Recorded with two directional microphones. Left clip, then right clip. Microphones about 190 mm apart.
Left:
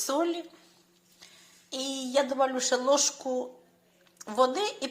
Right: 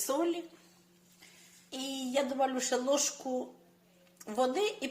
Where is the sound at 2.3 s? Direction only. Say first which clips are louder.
Left 4 dB; 5° right (ahead or behind).